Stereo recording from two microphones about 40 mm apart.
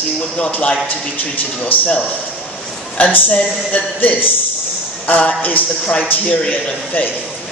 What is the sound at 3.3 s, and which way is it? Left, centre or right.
Speech, left.